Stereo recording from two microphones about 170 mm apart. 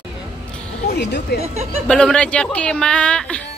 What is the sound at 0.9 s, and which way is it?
Speech, 75° left (ahead or behind).